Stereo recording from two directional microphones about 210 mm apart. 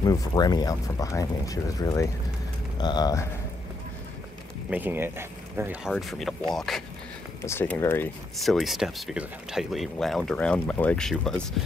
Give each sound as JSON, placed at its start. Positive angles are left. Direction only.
{"t": 0.0, "sound": "speech", "side_deg": 15}
{"t": 4.6, "sound": "speech", "side_deg": -10}
{"t": 7.4, "sound": "speech", "side_deg": 10}
{"t": 8.4, "sound": "speech", "side_deg": 0}